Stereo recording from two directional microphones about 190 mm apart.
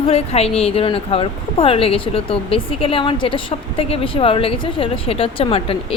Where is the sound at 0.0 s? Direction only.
30° left (ahead or behind).